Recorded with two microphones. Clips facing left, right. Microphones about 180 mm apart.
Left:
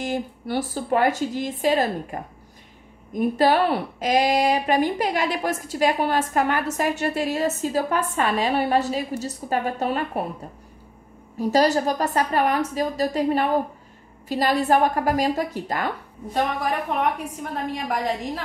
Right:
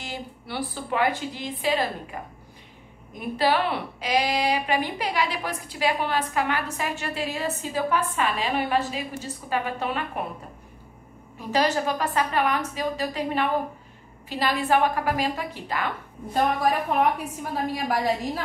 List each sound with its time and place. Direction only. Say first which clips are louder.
0.0 s a woman's voice: left 9 dB; 45° left (ahead or behind)
3.2 s a woman's voice: left 5 dB; 45° left (ahead or behind)
11.3 s a woman's voice: left 5 dB; 40° left (ahead or behind)
16.6 s a woman's voice: right 1 dB; 5° right (ahead or behind)